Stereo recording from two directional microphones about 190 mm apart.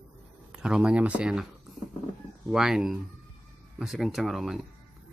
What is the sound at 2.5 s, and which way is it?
Speech, centre (ahead or behind).